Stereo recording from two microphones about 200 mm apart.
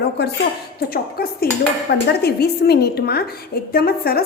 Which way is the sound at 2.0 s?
55° left (ahead or behind).